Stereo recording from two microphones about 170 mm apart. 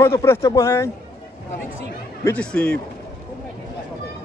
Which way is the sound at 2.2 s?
10° left (ahead or behind).